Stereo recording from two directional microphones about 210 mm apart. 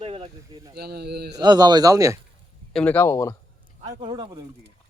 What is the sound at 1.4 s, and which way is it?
Speech, 20° right (ahead or behind).